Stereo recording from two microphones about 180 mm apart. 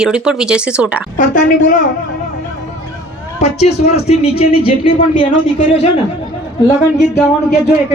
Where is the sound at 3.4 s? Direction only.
35° left (ahead or behind).